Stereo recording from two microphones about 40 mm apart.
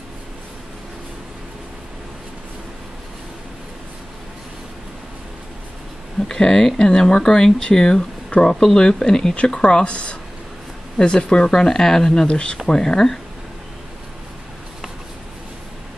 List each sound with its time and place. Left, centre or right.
6.1 s speech: centre
12.3 s speech: left
12.6 s speech: centre